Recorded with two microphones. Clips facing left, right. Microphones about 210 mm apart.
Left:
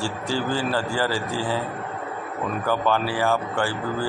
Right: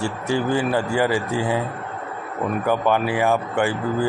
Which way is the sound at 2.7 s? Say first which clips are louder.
Right 3 dB; 20° right (ahead or behind).